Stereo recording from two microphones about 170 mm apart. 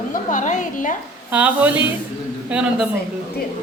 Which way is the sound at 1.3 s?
10° right (ahead or behind).